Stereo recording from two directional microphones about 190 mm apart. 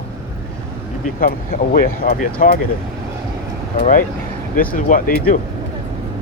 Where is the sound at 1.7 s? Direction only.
50° left (ahead or behind).